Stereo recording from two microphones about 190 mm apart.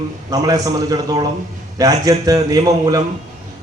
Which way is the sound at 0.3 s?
20° right (ahead or behind).